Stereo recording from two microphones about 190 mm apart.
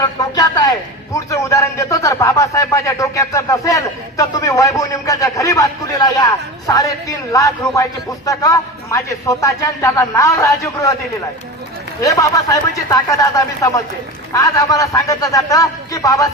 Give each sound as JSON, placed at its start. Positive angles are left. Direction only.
{"t": 0.0, "sound": "a man's voice", "side_deg": 20}
{"t": 11.9, "sound": "a man's voice", "side_deg": 15}